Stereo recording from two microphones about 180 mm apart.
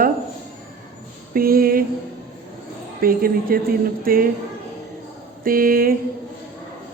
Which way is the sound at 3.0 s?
55° right (ahead or behind).